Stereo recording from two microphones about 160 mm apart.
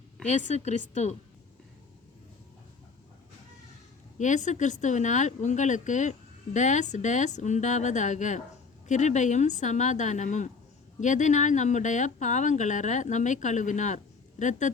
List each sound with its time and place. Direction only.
0.3 s speech: 50° left (ahead or behind)
4.2 s speech: 50° left (ahead or behind)